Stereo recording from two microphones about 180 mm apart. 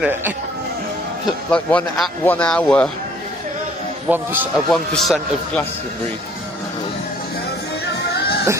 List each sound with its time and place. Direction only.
0.0 s a man's voice: 10° right (ahead or behind)
1.5 s speech: 5° left (ahead or behind)
4.1 s a man's voice: 10° right (ahead or behind)
4.6 s a man's voice: centre (ahead or behind)
8.1 s music: 60° left (ahead or behind)